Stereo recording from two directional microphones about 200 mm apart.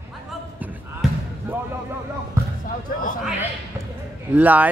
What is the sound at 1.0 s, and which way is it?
Basketball bounce, centre (ahead or behind).